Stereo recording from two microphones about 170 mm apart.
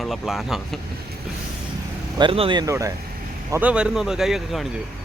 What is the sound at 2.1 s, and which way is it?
Speech, 30° right (ahead or behind).